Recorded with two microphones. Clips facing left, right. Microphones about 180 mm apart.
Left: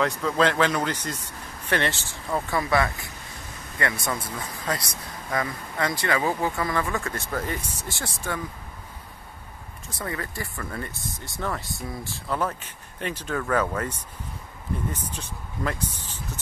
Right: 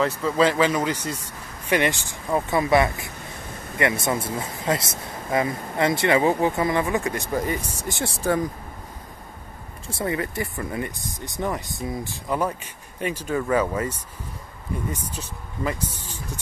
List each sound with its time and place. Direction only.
0.0 s speech: 5° right (ahead or behind)
8.0 s speech: 30° right (ahead or behind)
9.8 s speech: 25° right (ahead or behind); by 16.2 s 5° right (ahead or behind)